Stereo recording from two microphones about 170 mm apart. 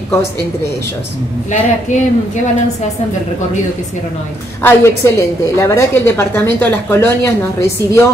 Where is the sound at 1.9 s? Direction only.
45° left (ahead or behind).